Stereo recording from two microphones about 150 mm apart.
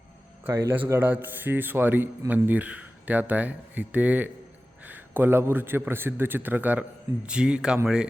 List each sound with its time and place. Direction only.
0.4 s speech: 15° right (ahead or behind)